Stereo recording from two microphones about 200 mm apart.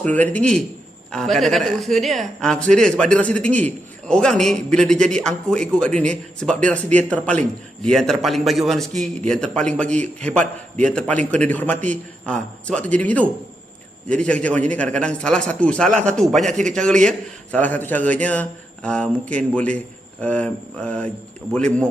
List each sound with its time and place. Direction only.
0.0 s a man's voice: 10° left (ahead or behind)
9.9 s a man's voice: 35° right (ahead or behind)
10.3 s a man's voice: 5° left (ahead or behind)
15.9 s a man's voice: 35° right (ahead or behind)
16.1 s a man's voice: centre (ahead or behind)